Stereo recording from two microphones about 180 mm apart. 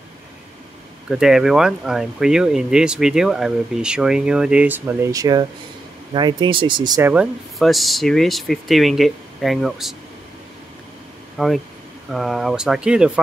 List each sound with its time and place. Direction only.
1.0 s speech: 5° right (ahead or behind); by 6.9 s 25° right (ahead or behind)
7.0 s speech: 10° right (ahead or behind)
7.5 s speech: centre (ahead or behind)
11.3 s speech: centre (ahead or behind)